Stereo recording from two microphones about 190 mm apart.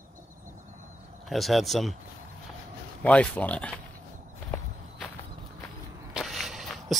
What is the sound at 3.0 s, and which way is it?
Speech, 5° left (ahead or behind).